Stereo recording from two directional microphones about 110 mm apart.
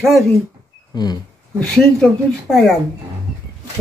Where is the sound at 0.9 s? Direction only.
40° left (ahead or behind).